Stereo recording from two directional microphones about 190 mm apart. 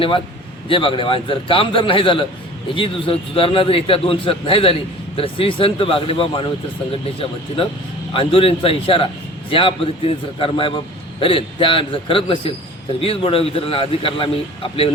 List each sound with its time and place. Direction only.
0.7 s a man's voice: 25° left (ahead or behind)